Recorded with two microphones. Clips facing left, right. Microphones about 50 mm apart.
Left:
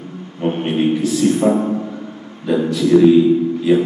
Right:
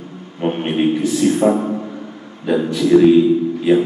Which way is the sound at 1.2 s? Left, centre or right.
Right.